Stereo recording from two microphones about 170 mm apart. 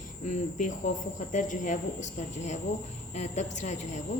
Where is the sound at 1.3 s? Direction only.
50° left (ahead or behind).